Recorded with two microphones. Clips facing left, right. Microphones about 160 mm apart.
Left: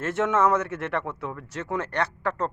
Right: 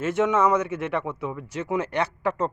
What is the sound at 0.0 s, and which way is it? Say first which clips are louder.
Speech: right 2 dB; centre (ahead or behind).